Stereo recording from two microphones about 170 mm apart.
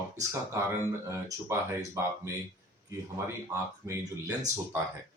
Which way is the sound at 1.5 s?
15° right (ahead or behind).